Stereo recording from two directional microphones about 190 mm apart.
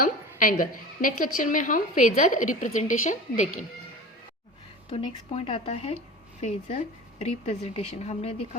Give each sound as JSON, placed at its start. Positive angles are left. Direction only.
{"t": 0.0, "sound": "a woman's voice", "side_deg": 45}
{"t": 4.9, "sound": "a woman's voice", "side_deg": 25}